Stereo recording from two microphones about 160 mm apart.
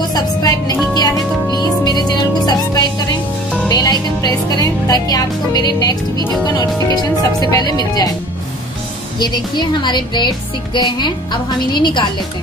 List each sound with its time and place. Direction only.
0.1 s music: 25° left (ahead or behind)
9.2 s music: 30° left (ahead or behind)